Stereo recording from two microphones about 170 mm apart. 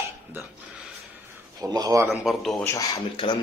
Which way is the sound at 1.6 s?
20° right (ahead or behind).